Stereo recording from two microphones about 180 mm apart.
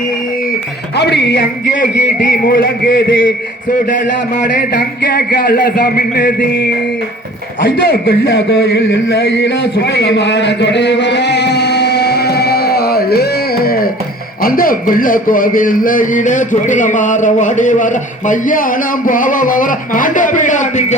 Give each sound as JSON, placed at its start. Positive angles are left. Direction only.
{"t": 0.9, "sound": "a man's voice", "side_deg": 70}
{"t": 8.2, "sound": "a man's voice", "side_deg": 65}
{"t": 13.7, "sound": "music", "side_deg": 55}
{"t": 14.4, "sound": "a man's voice", "side_deg": 50}